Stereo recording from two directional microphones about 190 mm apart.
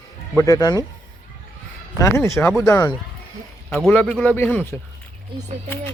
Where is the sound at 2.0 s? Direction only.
15° left (ahead or behind).